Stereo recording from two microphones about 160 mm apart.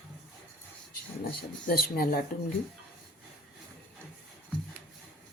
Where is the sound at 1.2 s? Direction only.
75° left (ahead or behind).